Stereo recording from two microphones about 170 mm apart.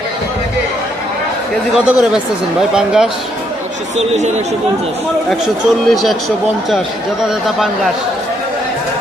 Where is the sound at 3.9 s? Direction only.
40° right (ahead or behind).